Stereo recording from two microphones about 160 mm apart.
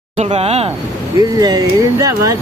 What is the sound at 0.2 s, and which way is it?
Speech, 40° right (ahead or behind).